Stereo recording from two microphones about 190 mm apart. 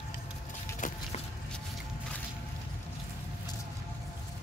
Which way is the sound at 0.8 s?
40° left (ahead or behind).